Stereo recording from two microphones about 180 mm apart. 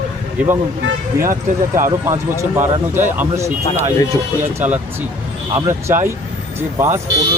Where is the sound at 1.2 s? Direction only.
50° right (ahead or behind).